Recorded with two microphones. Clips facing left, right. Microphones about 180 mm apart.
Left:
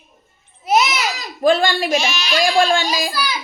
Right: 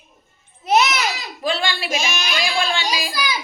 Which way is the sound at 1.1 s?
50° left (ahead or behind).